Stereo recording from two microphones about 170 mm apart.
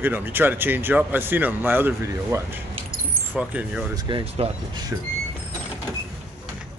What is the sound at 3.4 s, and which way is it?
Speech, 10° right (ahead or behind).